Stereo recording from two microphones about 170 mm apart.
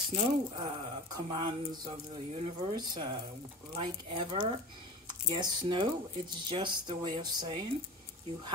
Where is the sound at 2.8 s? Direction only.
25° right (ahead or behind).